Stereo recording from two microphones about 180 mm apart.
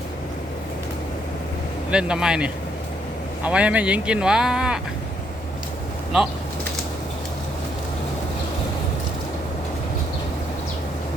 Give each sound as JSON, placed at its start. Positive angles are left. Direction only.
{"t": 1.9, "sound": "speech", "side_deg": -5}